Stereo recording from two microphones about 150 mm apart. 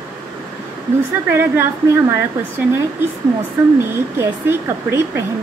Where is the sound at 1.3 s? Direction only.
15° right (ahead or behind).